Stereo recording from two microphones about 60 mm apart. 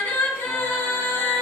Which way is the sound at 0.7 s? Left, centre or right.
Left.